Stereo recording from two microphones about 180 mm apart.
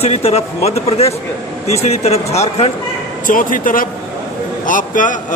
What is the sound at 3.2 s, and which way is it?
Speech, 50° left (ahead or behind).